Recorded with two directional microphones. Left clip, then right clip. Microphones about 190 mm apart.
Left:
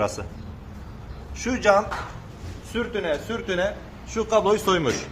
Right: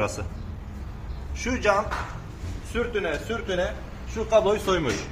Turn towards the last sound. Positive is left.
turn(degrees=35)  # may be behind; listen again after turning